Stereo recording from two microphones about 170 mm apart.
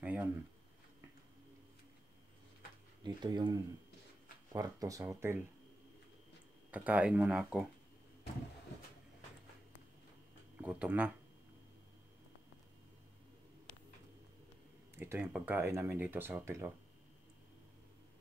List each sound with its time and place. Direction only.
0.0 s a sound: 10° right (ahead or behind)
3.0 s speech: 25° right (ahead or behind)
6.7 s speech: 10° right (ahead or behind)
10.6 s speech: 10° right (ahead or behind)
15.0 s speech: 10° right (ahead or behind)